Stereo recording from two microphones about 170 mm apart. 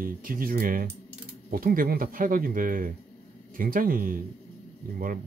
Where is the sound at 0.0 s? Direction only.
55° right (ahead or behind).